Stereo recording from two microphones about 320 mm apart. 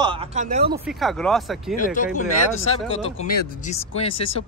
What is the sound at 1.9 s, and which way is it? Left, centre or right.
Speech, left.